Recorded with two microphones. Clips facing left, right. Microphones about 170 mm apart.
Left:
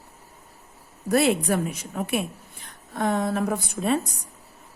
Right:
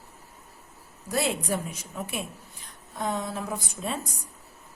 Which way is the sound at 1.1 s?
65° left (ahead or behind).